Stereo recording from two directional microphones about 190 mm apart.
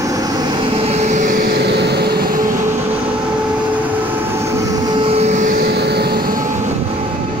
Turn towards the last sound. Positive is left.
turn(degrees=-60)  # may be behind; listen again after turning